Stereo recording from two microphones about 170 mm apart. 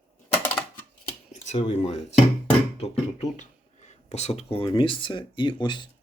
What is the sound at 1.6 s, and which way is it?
Dishes, 40° left (ahead or behind).